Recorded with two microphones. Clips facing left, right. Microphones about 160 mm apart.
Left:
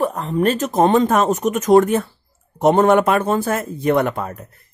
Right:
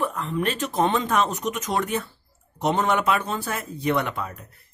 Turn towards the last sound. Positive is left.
turn(degrees=45)  # may be behind; listen again after turning